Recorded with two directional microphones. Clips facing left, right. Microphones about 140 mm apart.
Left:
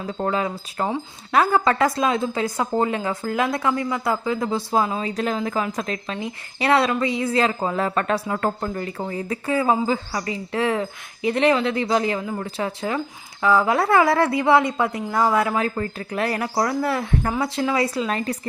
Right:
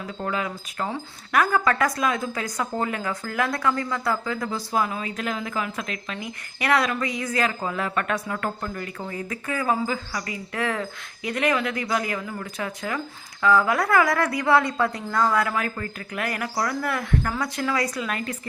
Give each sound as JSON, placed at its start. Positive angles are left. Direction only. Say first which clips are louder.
{"t": 0.0, "sound": "speech", "louder": "left 5 dB", "side_deg": 35}